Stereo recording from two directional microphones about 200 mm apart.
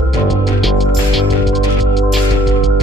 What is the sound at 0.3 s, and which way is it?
Music, centre (ahead or behind).